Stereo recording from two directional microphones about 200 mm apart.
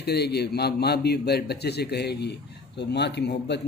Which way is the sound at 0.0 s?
55° left (ahead or behind).